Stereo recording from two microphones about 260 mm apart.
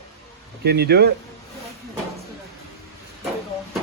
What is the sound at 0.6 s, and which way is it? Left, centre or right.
Speech, right.